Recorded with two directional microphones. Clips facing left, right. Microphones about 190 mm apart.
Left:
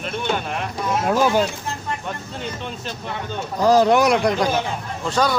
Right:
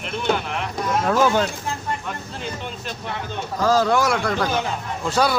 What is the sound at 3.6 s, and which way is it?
A man's voice, 20° left (ahead or behind).